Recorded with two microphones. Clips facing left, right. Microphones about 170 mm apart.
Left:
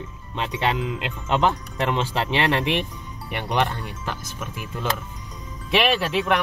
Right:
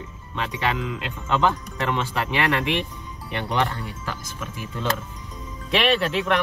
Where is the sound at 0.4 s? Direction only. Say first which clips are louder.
Left 1 dB; 25° left (ahead or behind).